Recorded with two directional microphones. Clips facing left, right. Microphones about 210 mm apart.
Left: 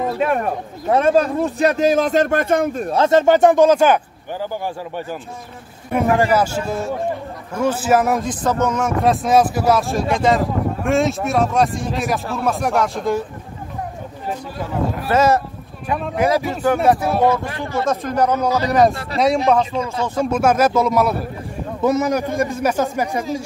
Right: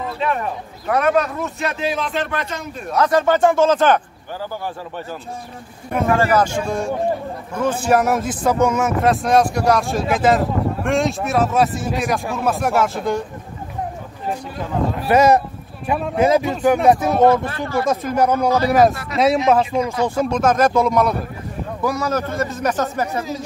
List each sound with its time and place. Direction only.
0.2 s speech: 45° left (ahead or behind)
0.8 s speech: 25° left (ahead or behind); by 2.8 s 55° left (ahead or behind)
2.9 s speech: 25° left (ahead or behind)
6.1 s speech: 10° left (ahead or behind)
15.0 s speech: 15° right (ahead or behind)
17.5 s speech: 15° left (ahead or behind)
17.8 s speech: 10° right (ahead or behind)
20.2 s speech: 5° left (ahead or behind)
21.8 s speech: 20° left (ahead or behind)